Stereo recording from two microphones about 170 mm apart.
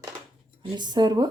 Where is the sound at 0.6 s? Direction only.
30° right (ahead or behind).